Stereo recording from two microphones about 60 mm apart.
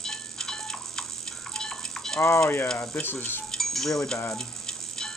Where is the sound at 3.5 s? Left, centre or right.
Centre.